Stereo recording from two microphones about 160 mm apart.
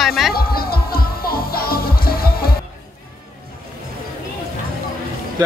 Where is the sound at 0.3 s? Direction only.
70° left (ahead or behind).